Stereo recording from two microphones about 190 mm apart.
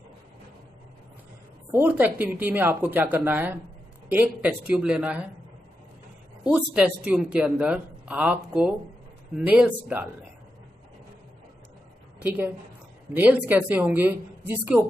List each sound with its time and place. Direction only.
1.7 s a woman's voice: 10° right (ahead or behind)
6.4 s a woman's voice: 5° right (ahead or behind)
12.2 s a woman's voice: 10° right (ahead or behind)